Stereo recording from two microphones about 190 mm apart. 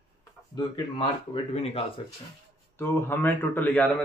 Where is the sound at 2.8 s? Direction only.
10° left (ahead or behind).